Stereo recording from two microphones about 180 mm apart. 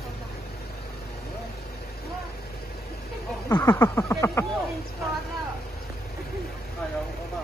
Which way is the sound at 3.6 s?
15° left (ahead or behind).